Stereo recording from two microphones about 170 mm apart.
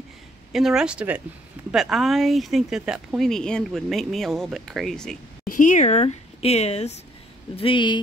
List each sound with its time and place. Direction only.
0.5 s speech: centre (ahead or behind)
5.5 s speech: 50° left (ahead or behind); by 8.0 s 30° left (ahead or behind)